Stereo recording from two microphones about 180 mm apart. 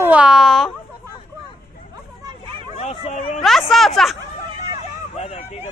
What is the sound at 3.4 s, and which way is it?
Speech, centre (ahead or behind).